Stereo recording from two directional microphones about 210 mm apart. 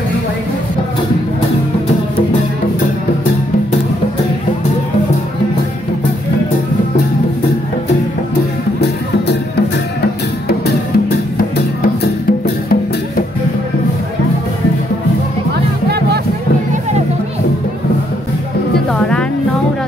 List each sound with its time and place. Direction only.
11.8 s music: 45° left (ahead or behind)
18.9 s music: 5° left (ahead or behind)